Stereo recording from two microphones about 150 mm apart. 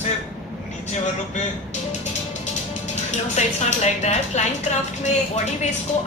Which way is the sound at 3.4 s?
50° left (ahead or behind).